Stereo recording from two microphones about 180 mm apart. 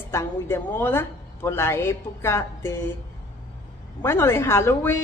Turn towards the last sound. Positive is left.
turn(degrees=10)  # may be behind; listen again after turning